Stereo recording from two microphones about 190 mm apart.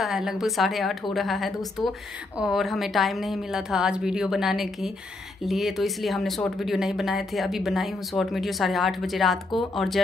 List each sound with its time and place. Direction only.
0.0 s speech: centre (ahead or behind)